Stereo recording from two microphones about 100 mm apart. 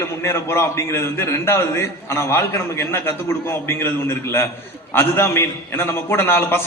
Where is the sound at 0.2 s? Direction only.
30° left (ahead or behind).